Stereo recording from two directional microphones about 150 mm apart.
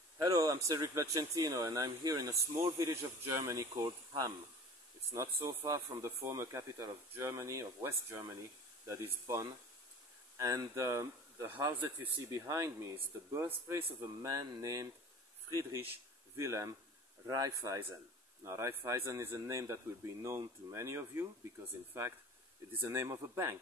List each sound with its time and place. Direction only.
0.2 s speech: 25° right (ahead or behind)
5.1 s speech: 15° right (ahead or behind)
22.7 s speech: 15° right (ahead or behind)